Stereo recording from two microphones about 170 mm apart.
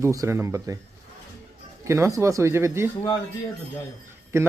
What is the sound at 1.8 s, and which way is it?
A man's voice, 15° right (ahead or behind).